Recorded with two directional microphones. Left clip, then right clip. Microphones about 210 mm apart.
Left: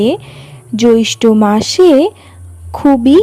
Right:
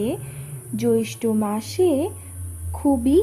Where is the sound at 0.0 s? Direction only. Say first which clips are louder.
Left 13 dB; 40° left (ahead or behind).